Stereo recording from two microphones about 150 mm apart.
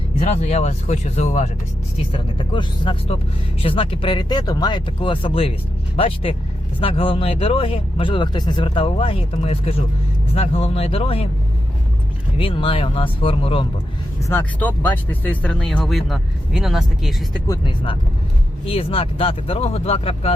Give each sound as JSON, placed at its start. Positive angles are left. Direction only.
{"t": 0.2, "sound": "speech", "side_deg": 50}
{"t": 2.1, "sound": "speech", "side_deg": 35}
{"t": 12.4, "sound": "speech", "side_deg": 35}
{"t": 14.2, "sound": "speech", "side_deg": 15}
{"t": 18.6, "sound": "speech", "side_deg": 40}